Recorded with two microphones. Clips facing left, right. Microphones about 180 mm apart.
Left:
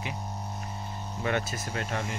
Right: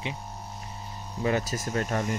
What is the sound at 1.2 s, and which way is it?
Speech, 35° right (ahead or behind).